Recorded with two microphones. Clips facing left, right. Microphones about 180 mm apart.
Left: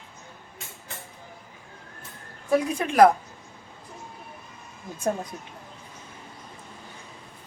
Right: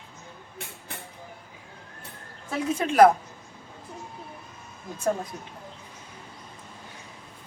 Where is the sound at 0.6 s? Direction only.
60° right (ahead or behind).